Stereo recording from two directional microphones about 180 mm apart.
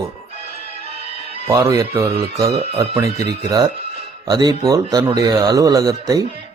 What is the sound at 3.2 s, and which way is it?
Speech, 20° right (ahead or behind).